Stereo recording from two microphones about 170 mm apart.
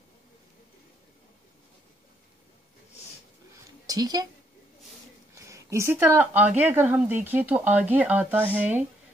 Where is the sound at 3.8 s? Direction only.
20° right (ahead or behind).